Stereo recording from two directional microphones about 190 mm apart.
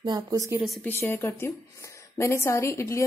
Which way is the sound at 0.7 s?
10° left (ahead or behind).